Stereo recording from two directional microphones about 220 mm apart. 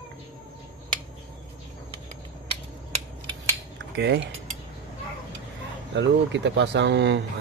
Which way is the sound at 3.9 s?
50° right (ahead or behind).